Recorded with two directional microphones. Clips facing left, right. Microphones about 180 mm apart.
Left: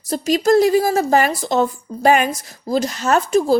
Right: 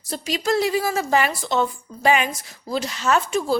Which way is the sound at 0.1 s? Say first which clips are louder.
Left 8 dB; 45° left (ahead or behind).